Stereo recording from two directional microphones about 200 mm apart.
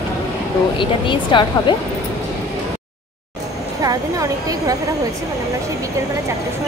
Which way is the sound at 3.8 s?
15° right (ahead or behind).